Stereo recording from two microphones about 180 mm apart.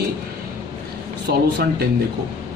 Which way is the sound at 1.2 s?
60° right (ahead or behind).